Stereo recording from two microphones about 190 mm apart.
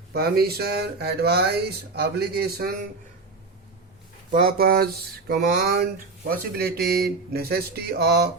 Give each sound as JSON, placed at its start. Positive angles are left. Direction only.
{"t": 0.1, "sound": "speech", "side_deg": -55}
{"t": 4.3, "sound": "speech", "side_deg": -50}